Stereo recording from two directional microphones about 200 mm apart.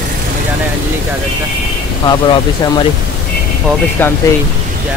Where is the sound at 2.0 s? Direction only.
20° left (ahead or behind).